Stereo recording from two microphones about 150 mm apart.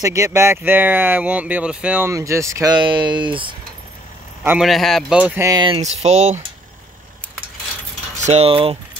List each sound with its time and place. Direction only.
0.0 s speech: 20° right (ahead or behind)
4.5 s a man's voice: centre (ahead or behind)
5.5 s speech: 30° right (ahead or behind)
5.8 s speech: 50° right (ahead or behind)
8.2 s speech: 45° right (ahead or behind)